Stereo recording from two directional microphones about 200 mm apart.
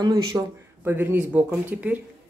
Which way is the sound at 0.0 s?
20° right (ahead or behind).